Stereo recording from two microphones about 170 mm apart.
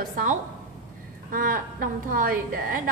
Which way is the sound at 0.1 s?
50° right (ahead or behind).